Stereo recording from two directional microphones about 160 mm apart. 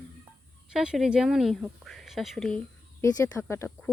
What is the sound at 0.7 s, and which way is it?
Speech, 5° right (ahead or behind).